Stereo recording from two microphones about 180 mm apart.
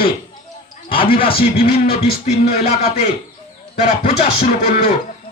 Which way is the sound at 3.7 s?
35° left (ahead or behind).